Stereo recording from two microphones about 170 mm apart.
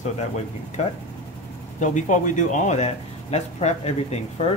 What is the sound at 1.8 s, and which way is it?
Speech, 45° left (ahead or behind).